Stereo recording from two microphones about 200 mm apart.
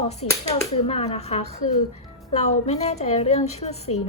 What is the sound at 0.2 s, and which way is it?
Speech, 90° left.